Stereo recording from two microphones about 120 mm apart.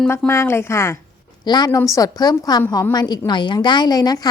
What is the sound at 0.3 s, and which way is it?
Speech, 20° left (ahead or behind).